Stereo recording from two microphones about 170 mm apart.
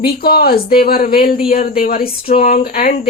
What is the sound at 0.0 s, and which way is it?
Speech, 65° left (ahead or behind).